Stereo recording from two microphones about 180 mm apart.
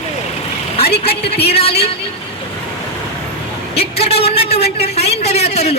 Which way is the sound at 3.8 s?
35° left (ahead or behind).